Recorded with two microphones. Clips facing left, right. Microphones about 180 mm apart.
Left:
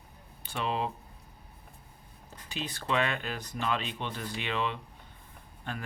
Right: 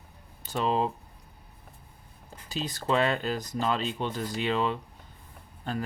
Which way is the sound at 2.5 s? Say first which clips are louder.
Right 4 dB; 40° right (ahead or behind).